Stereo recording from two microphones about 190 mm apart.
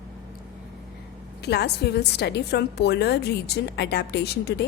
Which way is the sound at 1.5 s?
60° left (ahead or behind).